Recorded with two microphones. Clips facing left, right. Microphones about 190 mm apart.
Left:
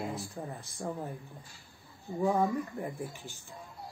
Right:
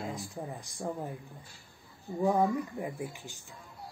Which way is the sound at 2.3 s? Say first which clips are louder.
Right 2 dB; 10° right (ahead or behind).